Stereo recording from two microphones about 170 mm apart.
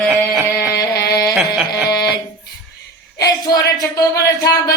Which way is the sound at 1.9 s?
25° left (ahead or behind).